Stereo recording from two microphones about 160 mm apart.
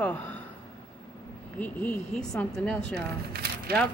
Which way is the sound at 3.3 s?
75° right (ahead or behind).